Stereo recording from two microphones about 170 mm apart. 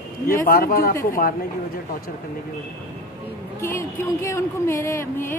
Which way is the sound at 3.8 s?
15° left (ahead or behind).